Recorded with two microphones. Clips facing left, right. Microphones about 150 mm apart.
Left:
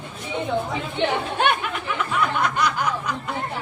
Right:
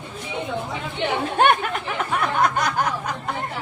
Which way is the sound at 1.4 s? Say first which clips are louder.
Right 7 dB; 45° right (ahead or behind).